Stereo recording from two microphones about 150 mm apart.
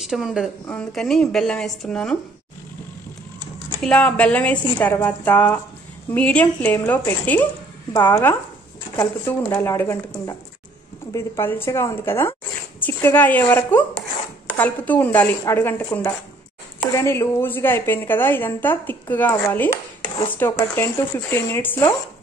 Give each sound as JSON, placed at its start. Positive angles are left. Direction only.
{"t": 0.0, "sound": "a woman's voice", "side_deg": -5}
{"t": 3.8, "sound": "a woman's voice", "side_deg": 10}